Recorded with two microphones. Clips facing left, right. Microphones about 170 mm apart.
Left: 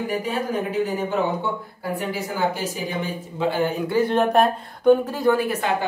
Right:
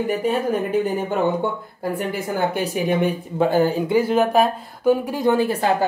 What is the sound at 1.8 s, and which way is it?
Speech, 55° right (ahead or behind).